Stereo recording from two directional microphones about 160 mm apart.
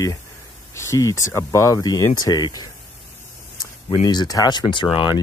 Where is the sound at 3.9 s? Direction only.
25° left (ahead or behind).